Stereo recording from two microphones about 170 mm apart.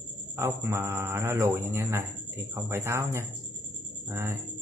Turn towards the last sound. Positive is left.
turn(degrees=-15)  # may be behind; listen again after turning